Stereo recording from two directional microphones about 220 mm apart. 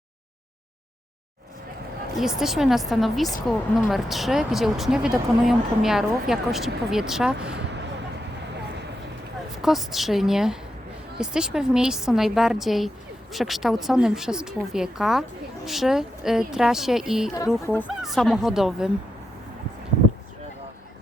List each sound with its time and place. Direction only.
2.1 s speech: centre (ahead or behind)
7.4 s a sound: 50° right (ahead or behind)
9.6 s speech: centre (ahead or behind)